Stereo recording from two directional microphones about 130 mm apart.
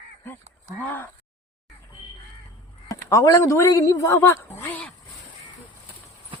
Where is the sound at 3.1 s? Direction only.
25° left (ahead or behind).